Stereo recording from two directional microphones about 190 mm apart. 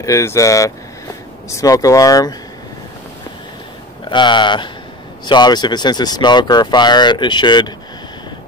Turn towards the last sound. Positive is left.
turn(degrees=25)  # may be behind; listen again after turning